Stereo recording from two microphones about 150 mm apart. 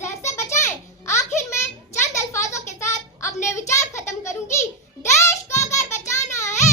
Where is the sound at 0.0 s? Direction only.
20° left (ahead or behind).